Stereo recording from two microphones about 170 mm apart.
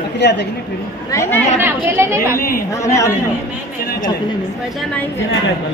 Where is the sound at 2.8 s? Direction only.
20° left (ahead or behind).